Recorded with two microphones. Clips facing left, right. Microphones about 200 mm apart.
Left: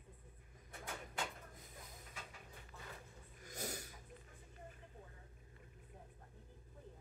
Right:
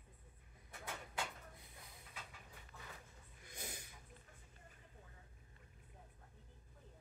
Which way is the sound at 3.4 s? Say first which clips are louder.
Left 6 dB; 40° left (ahead or behind).